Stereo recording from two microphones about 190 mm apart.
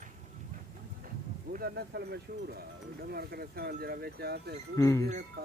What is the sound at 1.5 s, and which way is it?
Speech, 55° right (ahead or behind).